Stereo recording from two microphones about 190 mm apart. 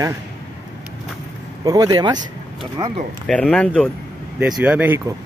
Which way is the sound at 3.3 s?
5° left (ahead or behind).